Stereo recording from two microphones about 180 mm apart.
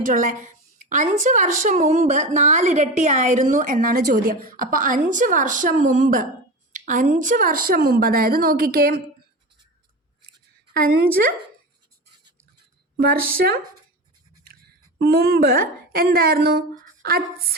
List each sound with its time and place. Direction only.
0.1 s a sound: 45° right (ahead or behind)
1.2 s a woman's voice: 45° right (ahead or behind)
10.8 s a woman's voice: 55° right (ahead or behind)
13.0 s a woman's voice: 60° right (ahead or behind)
14.9 s a woman's voice: 60° right (ahead or behind)
17.0 s a sound: 55° right (ahead or behind)